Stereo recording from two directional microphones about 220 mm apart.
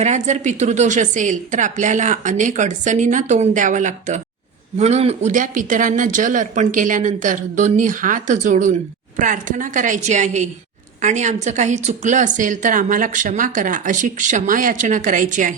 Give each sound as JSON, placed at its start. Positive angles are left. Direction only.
{"t": 0.0, "sound": "a woman's voice", "side_deg": -30}